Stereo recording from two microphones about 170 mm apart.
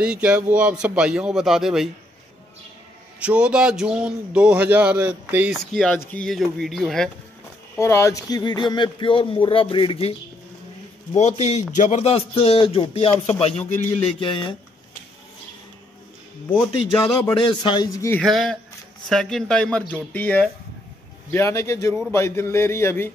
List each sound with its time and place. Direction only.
0.0 s speech: 5° right (ahead or behind)
3.2 s speech: 5° right (ahead or behind)
5.7 s speech: 5° left (ahead or behind)
7.7 s speech: 15° left (ahead or behind); by 10.1 s 35° left (ahead or behind)
11.1 s speech: 40° left (ahead or behind)
17.0 s speech: 30° left (ahead or behind)
18.2 s a man's voice: centre (ahead or behind)